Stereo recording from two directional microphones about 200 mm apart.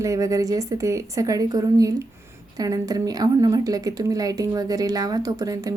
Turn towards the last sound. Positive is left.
turn(degrees=-15)  # may be behind; listen again after turning